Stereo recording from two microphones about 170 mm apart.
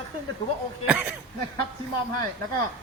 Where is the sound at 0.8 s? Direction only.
5° right (ahead or behind).